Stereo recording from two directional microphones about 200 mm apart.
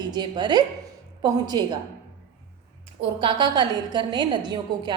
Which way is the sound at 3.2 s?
25° right (ahead or behind).